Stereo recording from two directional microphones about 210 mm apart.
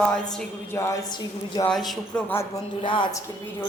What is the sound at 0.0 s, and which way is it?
Speech, 5° left (ahead or behind).